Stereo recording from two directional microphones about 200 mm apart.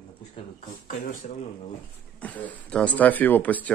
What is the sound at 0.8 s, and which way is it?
Speech, 40° left (ahead or behind).